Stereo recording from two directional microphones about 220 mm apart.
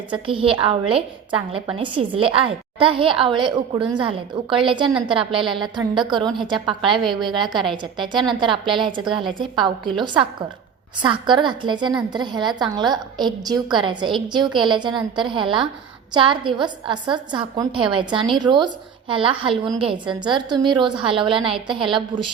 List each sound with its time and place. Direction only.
0.1 s a woman's voice: 25° right (ahead or behind)
8.0 s a woman's voice: 20° right (ahead or behind)
9.0 s a woman's voice: centre (ahead or behind)
9.4 s a woman's voice: 20° right (ahead or behind)
11.0 s a woman's voice: 20° right (ahead or behind)